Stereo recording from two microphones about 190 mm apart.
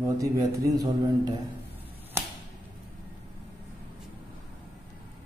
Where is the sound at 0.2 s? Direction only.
15° right (ahead or behind).